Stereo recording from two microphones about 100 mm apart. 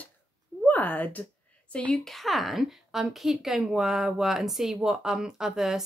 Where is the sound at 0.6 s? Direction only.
15° left (ahead or behind).